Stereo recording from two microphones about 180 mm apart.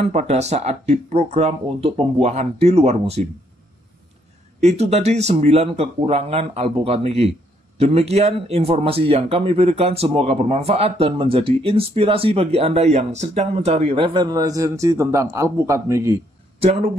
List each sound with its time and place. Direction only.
0.1 s speech: 40° right (ahead or behind)
4.6 s speech: 35° right (ahead or behind); by 16.2 s 15° right (ahead or behind)